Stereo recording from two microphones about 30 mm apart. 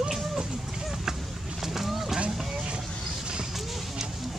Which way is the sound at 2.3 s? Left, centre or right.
Centre.